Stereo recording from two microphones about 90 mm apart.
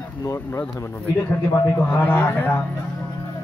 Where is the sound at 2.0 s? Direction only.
15° left (ahead or behind).